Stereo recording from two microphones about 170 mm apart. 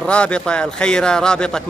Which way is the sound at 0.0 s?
5° left (ahead or behind).